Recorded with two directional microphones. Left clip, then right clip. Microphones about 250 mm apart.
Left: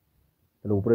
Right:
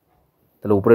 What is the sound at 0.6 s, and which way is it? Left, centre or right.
Speech, right.